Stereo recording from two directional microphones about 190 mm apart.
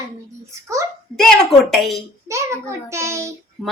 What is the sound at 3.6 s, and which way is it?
Speech, centre (ahead or behind).